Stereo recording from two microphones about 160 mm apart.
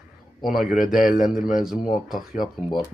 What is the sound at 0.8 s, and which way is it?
Speech, 60° left (ahead or behind).